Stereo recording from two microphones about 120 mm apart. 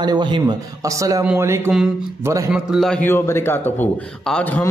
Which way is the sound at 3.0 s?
20° left (ahead or behind).